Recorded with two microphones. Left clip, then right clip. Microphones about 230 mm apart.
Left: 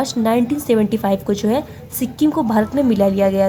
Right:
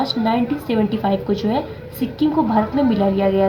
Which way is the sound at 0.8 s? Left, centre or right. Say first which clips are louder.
Left 1 dB; left.